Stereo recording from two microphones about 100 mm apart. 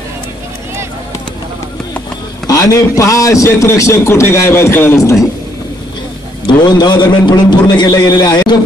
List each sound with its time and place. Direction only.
2.4 s a man's voice: 35° left (ahead or behind)
6.4 s a man's voice: 45° left (ahead or behind)